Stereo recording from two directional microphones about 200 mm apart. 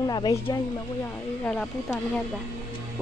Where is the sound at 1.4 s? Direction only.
5° left (ahead or behind).